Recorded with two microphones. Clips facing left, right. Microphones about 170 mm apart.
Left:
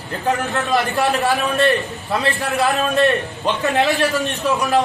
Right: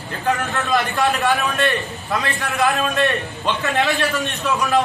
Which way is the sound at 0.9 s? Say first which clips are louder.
Left 1 dB; 40° left (ahead or behind).